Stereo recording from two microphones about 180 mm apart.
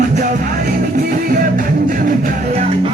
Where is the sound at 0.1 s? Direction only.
45° right (ahead or behind).